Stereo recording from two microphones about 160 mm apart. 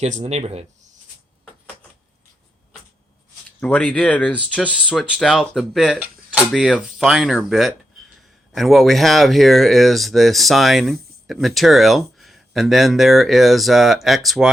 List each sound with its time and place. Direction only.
0.0 s speech: 45° right (ahead or behind)
3.6 s speech: 5° left (ahead or behind)
4.6 s speech: 5° right (ahead or behind)